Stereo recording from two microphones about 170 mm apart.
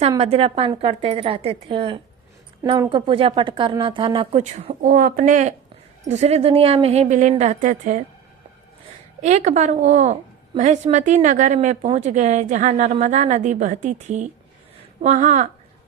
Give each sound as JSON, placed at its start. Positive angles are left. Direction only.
{"t": 0.2, "sound": "speech", "side_deg": -35}
{"t": 4.9, "sound": "a woman's voice", "side_deg": -55}
{"t": 9.2, "sound": "a woman's voice", "side_deg": -40}